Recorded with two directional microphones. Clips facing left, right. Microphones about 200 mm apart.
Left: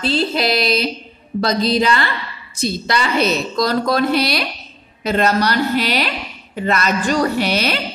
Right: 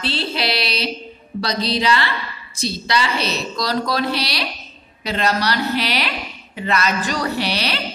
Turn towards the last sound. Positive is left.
turn(degrees=45)  # may be behind; listen again after turning